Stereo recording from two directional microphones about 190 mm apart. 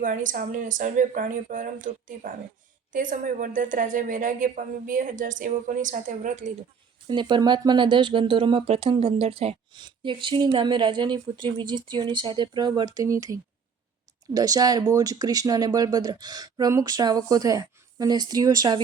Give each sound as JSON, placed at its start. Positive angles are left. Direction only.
{"t": 0.0, "sound": "a woman's voice", "side_deg": -45}
{"t": 7.1, "sound": "speech", "side_deg": -25}